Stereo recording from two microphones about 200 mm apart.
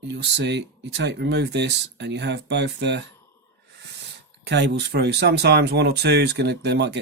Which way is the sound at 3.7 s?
60° right (ahead or behind).